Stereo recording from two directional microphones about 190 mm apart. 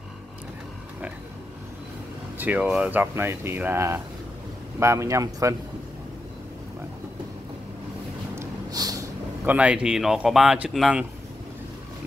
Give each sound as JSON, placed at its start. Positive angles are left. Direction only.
{"t": 2.3, "sound": "speech", "side_deg": -10}
{"t": 8.4, "sound": "a sound", "side_deg": -20}
{"t": 9.5, "sound": "speech", "side_deg": -5}